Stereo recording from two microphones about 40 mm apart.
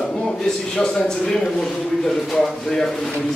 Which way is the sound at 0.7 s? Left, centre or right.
Left.